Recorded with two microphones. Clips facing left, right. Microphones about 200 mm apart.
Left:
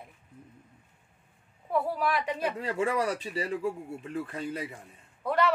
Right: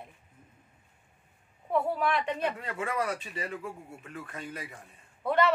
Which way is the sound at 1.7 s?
5° left (ahead or behind).